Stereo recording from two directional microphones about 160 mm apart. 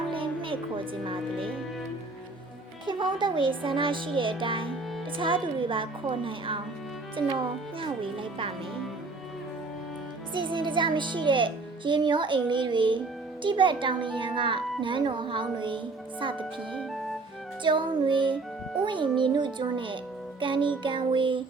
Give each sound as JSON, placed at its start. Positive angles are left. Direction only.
{"t": 0.1, "sound": "music", "side_deg": -35}
{"t": 1.0, "sound": "a child's voice", "side_deg": -35}
{"t": 2.8, "sound": "a child's voice", "side_deg": -30}
{"t": 10.3, "sound": "a child's voice", "side_deg": -30}
{"t": 17.6, "sound": "a child's voice", "side_deg": -30}